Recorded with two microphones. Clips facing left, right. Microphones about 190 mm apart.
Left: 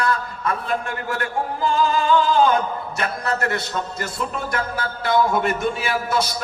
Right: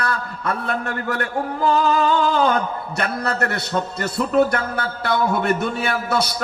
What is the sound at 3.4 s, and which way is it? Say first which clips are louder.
A man's voice: right 2 dB; 60° right (ahead or behind).